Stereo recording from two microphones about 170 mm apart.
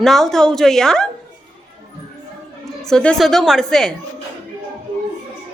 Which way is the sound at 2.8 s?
5° left (ahead or behind).